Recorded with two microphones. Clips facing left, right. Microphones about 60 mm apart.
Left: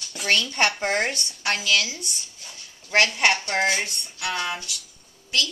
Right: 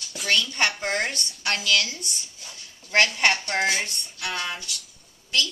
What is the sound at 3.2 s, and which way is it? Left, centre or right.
Speech, centre.